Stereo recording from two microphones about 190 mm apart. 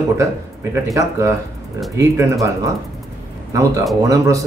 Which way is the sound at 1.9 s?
15° right (ahead or behind).